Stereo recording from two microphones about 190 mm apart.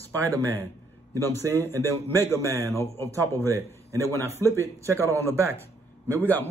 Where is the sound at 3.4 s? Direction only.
15° right (ahead or behind).